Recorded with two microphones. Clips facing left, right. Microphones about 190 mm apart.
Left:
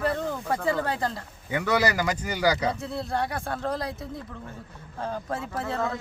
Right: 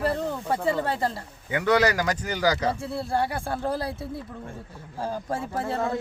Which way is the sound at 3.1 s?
30° right (ahead or behind).